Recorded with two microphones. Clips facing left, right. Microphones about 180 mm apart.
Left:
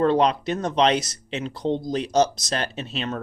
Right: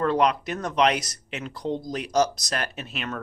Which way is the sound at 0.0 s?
25° left (ahead or behind).